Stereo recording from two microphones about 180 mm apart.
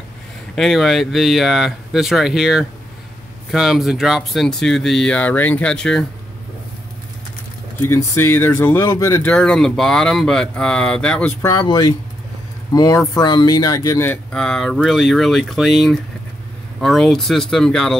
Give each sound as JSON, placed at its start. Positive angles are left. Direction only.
{"t": 0.6, "sound": "speech", "side_deg": 0}
{"t": 7.8, "sound": "speech", "side_deg": 15}
{"t": 9.3, "sound": "speech", "side_deg": 5}
{"t": 11.4, "sound": "speech", "side_deg": 20}